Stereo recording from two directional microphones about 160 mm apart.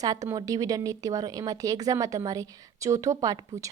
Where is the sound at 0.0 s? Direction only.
20° right (ahead or behind).